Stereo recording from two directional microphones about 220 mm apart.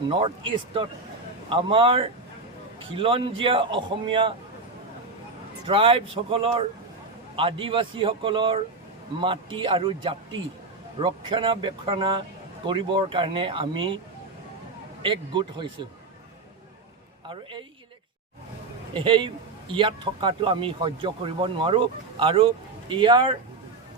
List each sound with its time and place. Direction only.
0.1 s a man's voice: 25° right (ahead or behind)
5.6 s a man's voice: 25° right (ahead or behind)
15.0 s a man's voice: 20° right (ahead or behind)
17.2 s a man's voice: 20° right (ahead or behind)
18.9 s a man's voice: 25° right (ahead or behind)